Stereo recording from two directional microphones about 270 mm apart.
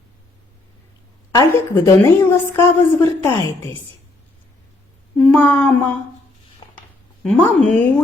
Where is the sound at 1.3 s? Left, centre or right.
Centre.